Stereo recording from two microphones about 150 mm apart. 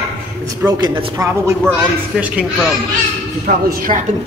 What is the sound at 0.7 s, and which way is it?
Speech, 25° right (ahead or behind).